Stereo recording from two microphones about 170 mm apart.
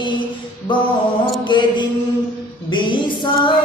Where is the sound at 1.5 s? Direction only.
25° left (ahead or behind).